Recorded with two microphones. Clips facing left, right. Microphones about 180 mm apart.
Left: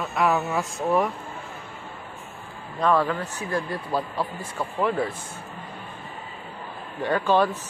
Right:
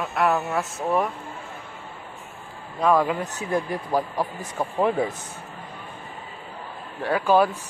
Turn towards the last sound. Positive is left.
turn(degrees=-10)  # may be behind; listen again after turning